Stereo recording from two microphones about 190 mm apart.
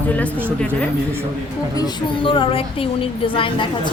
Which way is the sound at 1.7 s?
25° left (ahead or behind).